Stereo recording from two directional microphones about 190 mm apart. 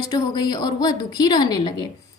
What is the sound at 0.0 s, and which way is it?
A woman's voice, 20° left (ahead or behind).